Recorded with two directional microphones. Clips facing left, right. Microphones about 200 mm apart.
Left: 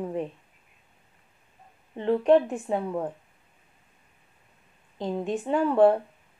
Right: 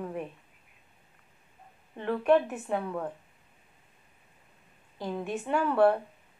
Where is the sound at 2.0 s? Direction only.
20° left (ahead or behind).